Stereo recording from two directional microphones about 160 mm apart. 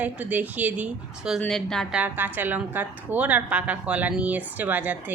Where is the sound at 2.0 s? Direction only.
10° right (ahead or behind).